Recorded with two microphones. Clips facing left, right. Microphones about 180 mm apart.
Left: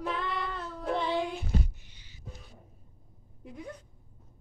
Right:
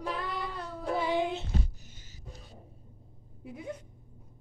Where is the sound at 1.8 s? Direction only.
45° right (ahead or behind).